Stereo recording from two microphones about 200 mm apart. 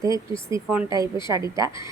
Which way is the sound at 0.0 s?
15° right (ahead or behind).